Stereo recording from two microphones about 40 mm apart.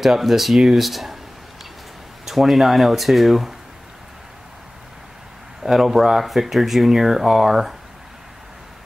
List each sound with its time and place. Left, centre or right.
0.0 s speech: centre
2.2 s speech: centre
5.6 s speech: centre